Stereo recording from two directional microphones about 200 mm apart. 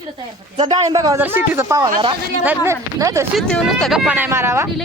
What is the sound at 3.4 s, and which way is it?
Speech, centre (ahead or behind).